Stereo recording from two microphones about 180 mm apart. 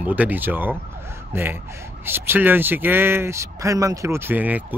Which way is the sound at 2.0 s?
10° right (ahead or behind).